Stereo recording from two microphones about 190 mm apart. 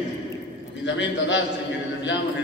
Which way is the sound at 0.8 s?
70° left (ahead or behind).